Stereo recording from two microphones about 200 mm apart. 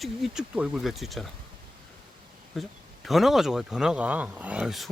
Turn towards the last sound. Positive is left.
turn(degrees=0)  # may be behind; listen again after turning